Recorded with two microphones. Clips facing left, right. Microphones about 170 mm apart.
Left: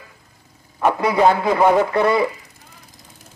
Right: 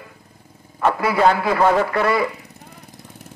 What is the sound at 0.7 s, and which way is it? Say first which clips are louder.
A man's voice: left 1 dB; 15° left (ahead or behind).